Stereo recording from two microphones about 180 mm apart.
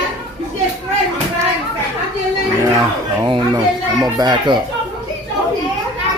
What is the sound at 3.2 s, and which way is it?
Speech, 25° right (ahead or behind).